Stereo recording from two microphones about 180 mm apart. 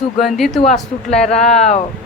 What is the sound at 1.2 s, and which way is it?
Speech, 40° left (ahead or behind).